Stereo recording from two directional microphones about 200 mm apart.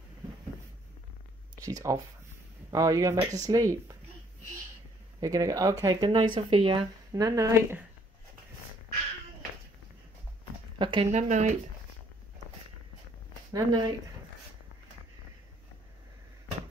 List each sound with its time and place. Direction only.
1.6 s speech: 15° right (ahead or behind)
5.2 s speech: 15° right (ahead or behind)
10.8 s speech: 25° right (ahead or behind)
13.5 s speech: 20° right (ahead or behind)